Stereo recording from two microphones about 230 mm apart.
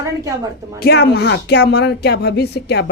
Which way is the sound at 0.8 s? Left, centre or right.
Left.